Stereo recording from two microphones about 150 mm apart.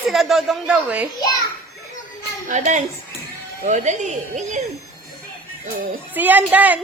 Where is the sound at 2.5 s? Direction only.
55° right (ahead or behind).